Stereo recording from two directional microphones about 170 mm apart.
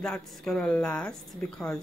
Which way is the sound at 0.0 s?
5° left (ahead or behind).